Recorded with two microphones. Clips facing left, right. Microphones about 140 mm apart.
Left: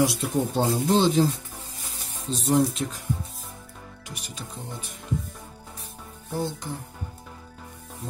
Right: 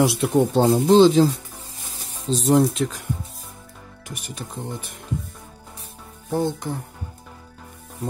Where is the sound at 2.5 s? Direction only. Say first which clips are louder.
Right 4 dB; 90° right.